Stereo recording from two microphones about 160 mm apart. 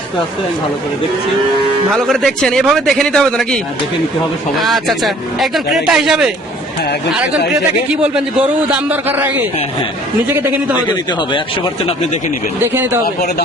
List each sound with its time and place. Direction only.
1.9 s speech: centre (ahead or behind)
4.6 s speech: centre (ahead or behind)
7.9 s a man's voice: 5° right (ahead or behind)
10.4 s a man's voice: 10° right (ahead or behind)
10.8 s speech: 30° left (ahead or behind)
12.5 s a man's voice: 15° right (ahead or behind)